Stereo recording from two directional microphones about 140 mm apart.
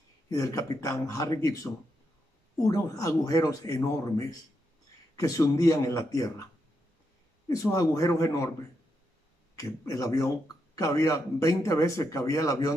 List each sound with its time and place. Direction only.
0.4 s a man's voice: 25° left (ahead or behind)
9.6 s a man's voice: 25° left (ahead or behind)